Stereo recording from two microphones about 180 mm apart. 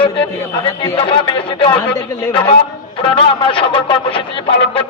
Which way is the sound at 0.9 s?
30° left (ahead or behind).